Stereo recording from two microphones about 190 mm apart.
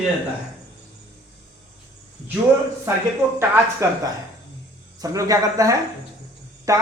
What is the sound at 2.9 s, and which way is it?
Speech, 15° right (ahead or behind).